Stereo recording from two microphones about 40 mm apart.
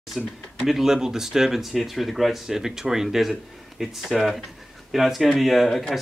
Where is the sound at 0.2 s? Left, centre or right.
Centre.